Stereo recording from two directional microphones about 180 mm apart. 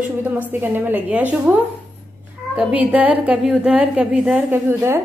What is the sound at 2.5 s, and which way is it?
A woman's voice, 5° right (ahead or behind).